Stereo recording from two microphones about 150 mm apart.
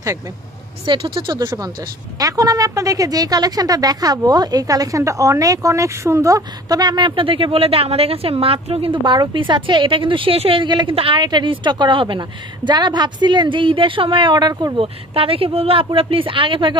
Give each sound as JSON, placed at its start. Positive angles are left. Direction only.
{"t": 0.8, "sound": "speech", "side_deg": -35}
{"t": 14.8, "sound": "speech", "side_deg": -40}